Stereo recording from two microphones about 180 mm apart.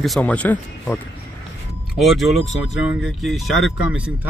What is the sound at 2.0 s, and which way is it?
Speech, centre (ahead or behind).